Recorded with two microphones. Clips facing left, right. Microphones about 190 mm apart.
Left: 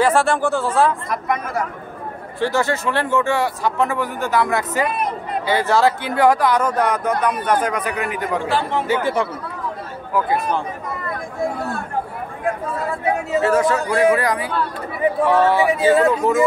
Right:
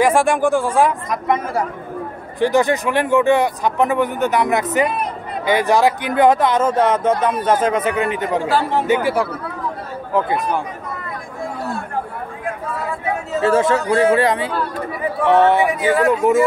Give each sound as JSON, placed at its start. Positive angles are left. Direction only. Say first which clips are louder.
{"t": 0.0, "sound": "speech", "louder": "right 2 dB", "side_deg": -10}
{"t": 2.4, "sound": "speech", "louder": "right 4 dB", "side_deg": -15}
{"t": 8.5, "sound": "speech", "louder": "right 3 dB", "side_deg": -40}
{"t": 8.8, "sound": "speech", "louder": "right 3 dB", "side_deg": -20}
{"t": 10.1, "sound": "speech", "louder": "right 1 dB", "side_deg": -20}
{"t": 13.4, "sound": "speech", "louder": "right 3 dB", "side_deg": -25}